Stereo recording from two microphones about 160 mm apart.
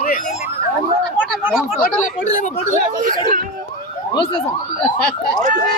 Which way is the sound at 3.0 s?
55° right (ahead or behind).